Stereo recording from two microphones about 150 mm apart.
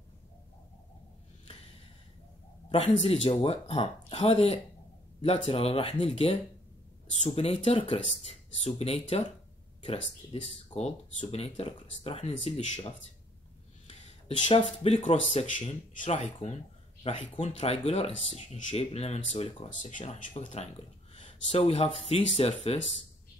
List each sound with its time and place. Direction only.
2.7 s speech: 45° left (ahead or behind)